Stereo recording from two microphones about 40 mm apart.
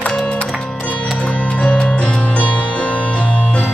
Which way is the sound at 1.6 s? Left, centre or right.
Left.